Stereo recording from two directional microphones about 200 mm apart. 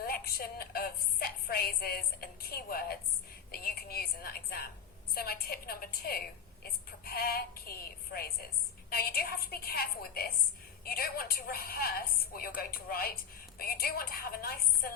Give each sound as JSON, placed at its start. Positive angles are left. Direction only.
{"t": 0.1, "sound": "a woman's voice", "side_deg": 50}
{"t": 3.5, "sound": "a sound", "side_deg": 50}
{"t": 5.1, "sound": "a woman's voice", "side_deg": 50}